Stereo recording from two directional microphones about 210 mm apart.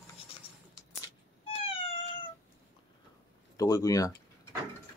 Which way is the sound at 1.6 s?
25° left (ahead or behind).